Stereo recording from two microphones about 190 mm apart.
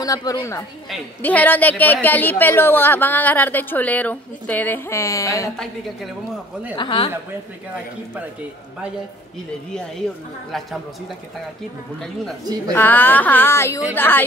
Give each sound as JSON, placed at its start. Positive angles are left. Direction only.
{"t": 0.0, "sound": "a woman's voice", "side_deg": 20}
{"t": 6.8, "sound": "speech", "side_deg": 25}
{"t": 12.7, "sound": "a woman's voice", "side_deg": 10}